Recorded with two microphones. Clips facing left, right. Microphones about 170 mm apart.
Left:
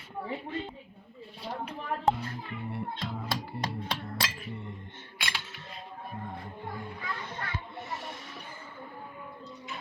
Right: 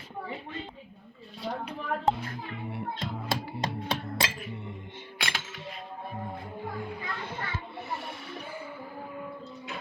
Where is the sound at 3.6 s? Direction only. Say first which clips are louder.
Right 3 dB; 20° right (ahead or behind).